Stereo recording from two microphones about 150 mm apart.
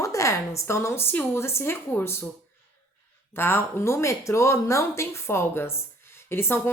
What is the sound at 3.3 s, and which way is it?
Speech, 15° left (ahead or behind).